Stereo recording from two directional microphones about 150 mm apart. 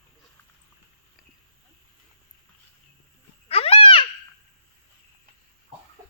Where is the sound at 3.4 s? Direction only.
40° left (ahead or behind).